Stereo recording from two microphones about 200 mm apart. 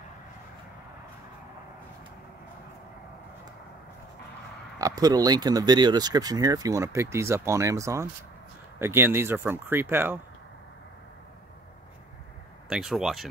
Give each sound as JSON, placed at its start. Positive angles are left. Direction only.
{"t": 4.7, "sound": "speech", "side_deg": -20}
{"t": 12.6, "sound": "speech", "side_deg": -5}